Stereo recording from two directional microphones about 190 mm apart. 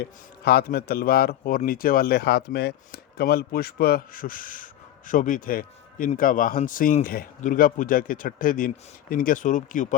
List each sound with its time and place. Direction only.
0.0 s a man's voice: 55° left (ahead or behind)